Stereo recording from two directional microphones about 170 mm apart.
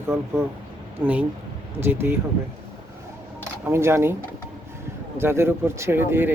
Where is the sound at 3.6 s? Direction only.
15° right (ahead or behind).